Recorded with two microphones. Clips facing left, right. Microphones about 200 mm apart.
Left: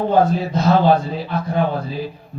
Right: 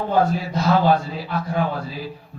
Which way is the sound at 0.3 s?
20° left (ahead or behind).